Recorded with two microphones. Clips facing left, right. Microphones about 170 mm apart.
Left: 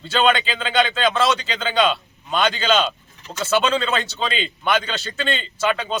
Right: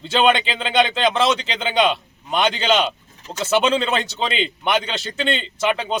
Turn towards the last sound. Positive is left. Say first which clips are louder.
# right 1 dB
turn(degrees=-20)  # may be behind; listen again after turning